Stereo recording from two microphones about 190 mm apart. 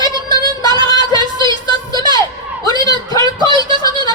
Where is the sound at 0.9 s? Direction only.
20° left (ahead or behind).